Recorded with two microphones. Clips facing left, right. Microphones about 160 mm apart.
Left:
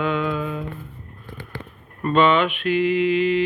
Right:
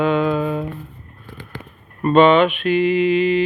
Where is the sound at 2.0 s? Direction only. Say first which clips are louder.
Right 5 dB; 25° right (ahead or behind).